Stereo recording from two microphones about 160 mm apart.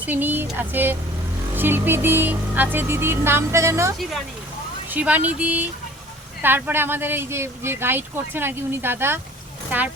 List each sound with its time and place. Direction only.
0.0 s speech: 10° right (ahead or behind)